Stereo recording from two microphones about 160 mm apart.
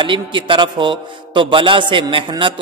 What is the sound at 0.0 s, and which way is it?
A man's voice, 30° right (ahead or behind).